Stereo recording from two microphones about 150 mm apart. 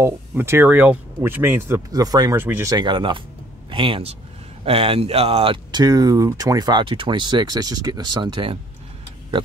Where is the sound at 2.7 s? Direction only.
30° right (ahead or behind).